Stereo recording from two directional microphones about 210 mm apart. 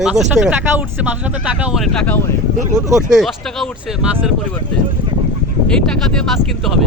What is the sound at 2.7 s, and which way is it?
Speech, 15° right (ahead or behind).